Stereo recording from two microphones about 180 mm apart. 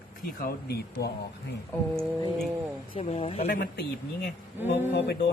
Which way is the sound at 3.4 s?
60° left (ahead or behind).